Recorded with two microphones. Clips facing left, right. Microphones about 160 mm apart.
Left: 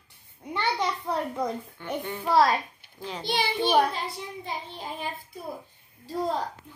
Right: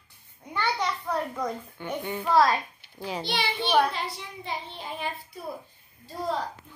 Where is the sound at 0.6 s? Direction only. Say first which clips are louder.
Even; 20° left (ahead or behind).